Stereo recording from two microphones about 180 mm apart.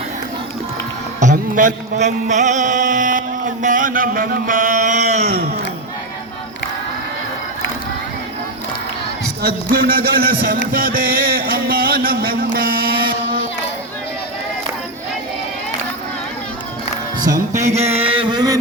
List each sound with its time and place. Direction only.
1.2 s a sound: 45° right (ahead or behind)
5.2 s speech: 60° right (ahead or behind)
9.4 s speech: 60° right (ahead or behind)
10.7 s music: 55° right (ahead or behind)
17.9 s chant: 30° right (ahead or behind)